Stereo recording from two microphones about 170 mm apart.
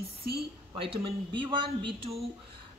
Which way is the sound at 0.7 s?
35° right (ahead or behind).